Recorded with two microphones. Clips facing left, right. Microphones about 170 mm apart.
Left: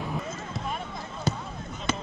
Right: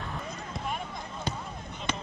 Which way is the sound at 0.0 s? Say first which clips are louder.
Left 4 dB; centre (ahead or behind).